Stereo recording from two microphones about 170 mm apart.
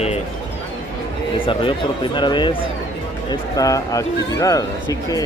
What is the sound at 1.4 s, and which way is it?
Speech, 30° left (ahead or behind).